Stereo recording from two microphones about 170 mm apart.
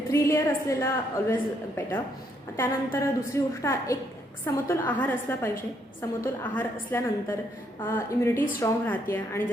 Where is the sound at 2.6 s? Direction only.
15° left (ahead or behind).